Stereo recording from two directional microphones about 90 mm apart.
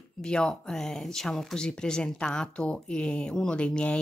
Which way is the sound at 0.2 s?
10° left (ahead or behind).